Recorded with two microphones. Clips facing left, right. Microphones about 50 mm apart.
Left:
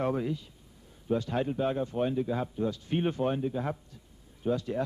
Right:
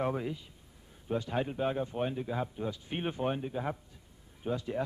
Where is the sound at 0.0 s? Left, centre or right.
Centre.